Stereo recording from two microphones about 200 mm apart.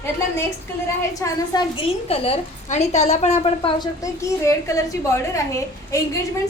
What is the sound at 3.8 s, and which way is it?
A woman's voice, 15° left (ahead or behind).